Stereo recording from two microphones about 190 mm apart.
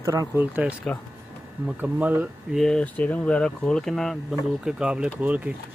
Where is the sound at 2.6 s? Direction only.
5° left (ahead or behind).